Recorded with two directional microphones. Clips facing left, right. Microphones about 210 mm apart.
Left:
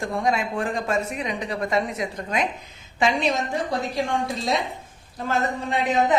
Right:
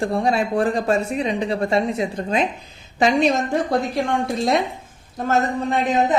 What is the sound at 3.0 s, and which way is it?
Speech, 40° right (ahead or behind).